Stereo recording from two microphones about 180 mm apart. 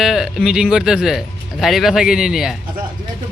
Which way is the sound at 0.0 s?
Centre (ahead or behind).